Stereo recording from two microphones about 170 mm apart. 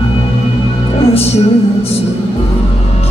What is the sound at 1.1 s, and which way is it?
Music, 35° left (ahead or behind).